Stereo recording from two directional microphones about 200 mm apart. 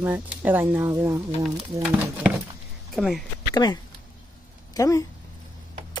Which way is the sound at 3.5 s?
20° left (ahead or behind).